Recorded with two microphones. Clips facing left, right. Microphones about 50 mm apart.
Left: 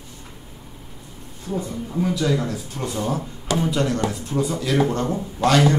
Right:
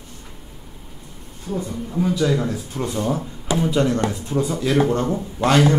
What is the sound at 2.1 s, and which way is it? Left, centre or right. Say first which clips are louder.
A man's voice: right 3 dB; centre.